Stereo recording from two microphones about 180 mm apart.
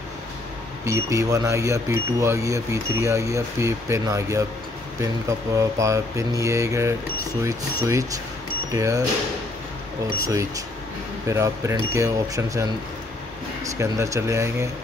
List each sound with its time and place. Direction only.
0.8 s speech: 15° right (ahead or behind)
5.6 s speech: 15° right (ahead or behind)
10.2 s speech: 20° right (ahead or behind)
13.7 s speech: 15° right (ahead or behind)